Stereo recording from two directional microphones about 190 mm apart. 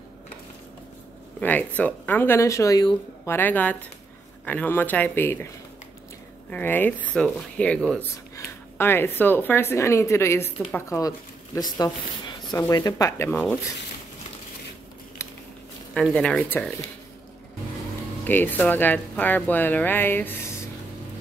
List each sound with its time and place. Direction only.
1.4 s speech: 10° left (ahead or behind)
3.3 s speech: 10° left (ahead or behind)
6.5 s speech: 10° left (ahead or behind)
15.2 s a sound: 15° left (ahead or behind)
15.9 s speech: 5° left (ahead or behind)
18.2 s speech: 10° left (ahead or behind)